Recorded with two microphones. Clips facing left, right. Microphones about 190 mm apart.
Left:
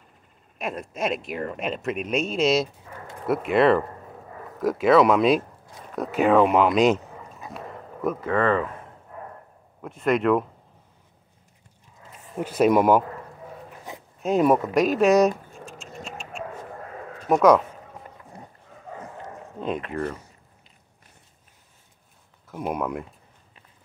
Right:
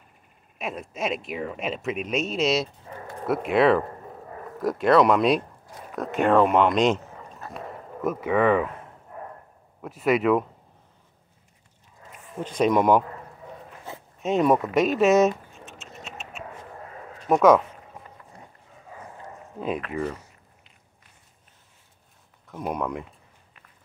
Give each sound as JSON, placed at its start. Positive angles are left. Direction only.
{"t": 0.6, "sound": "speech", "side_deg": 0}
{"t": 8.0, "sound": "speech", "side_deg": -5}
{"t": 9.8, "sound": "speech", "side_deg": -5}
{"t": 12.4, "sound": "speech", "side_deg": 5}
{"t": 13.9, "sound": "a sound", "side_deg": 15}
{"t": 14.2, "sound": "keys jangling", "side_deg": 0}
{"t": 17.3, "sound": "speech", "side_deg": 0}
{"t": 19.9, "sound": "speech", "side_deg": -10}
{"t": 22.5, "sound": "speech", "side_deg": 5}